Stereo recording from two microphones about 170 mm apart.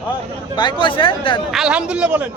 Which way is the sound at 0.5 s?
30° left (ahead or behind).